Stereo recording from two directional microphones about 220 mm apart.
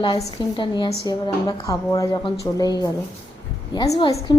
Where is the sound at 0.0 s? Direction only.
25° left (ahead or behind).